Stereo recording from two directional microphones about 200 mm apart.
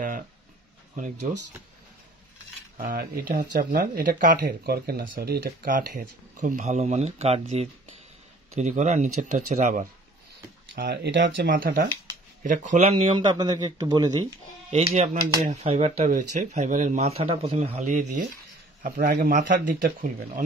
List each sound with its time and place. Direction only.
0.9 s speech: 40° right (ahead or behind)
2.8 s speech: 45° right (ahead or behind)
10.8 s a man's voice: 55° right (ahead or behind); by 14.2 s 20° right (ahead or behind)
14.7 s speech: 30° right (ahead or behind)